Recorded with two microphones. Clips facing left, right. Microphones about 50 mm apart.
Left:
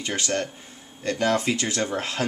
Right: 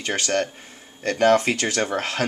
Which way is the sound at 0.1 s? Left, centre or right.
Right.